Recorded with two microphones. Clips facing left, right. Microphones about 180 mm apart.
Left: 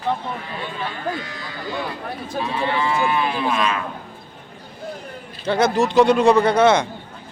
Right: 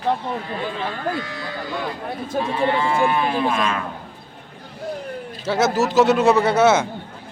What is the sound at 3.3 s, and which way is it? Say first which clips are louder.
Speech: right 2 dB; 30° right (ahead or behind).